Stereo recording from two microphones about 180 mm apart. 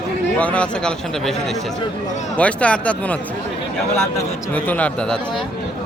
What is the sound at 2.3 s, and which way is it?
Speech, 5° left (ahead or behind).